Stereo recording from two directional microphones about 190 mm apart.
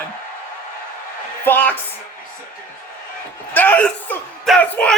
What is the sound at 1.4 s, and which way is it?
Speech, 10° left (ahead or behind).